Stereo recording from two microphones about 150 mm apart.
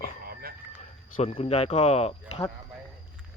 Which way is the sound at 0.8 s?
45° left (ahead or behind).